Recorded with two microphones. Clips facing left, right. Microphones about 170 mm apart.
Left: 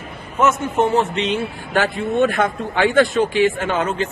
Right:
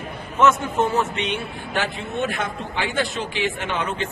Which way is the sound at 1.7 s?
50° left (ahead or behind).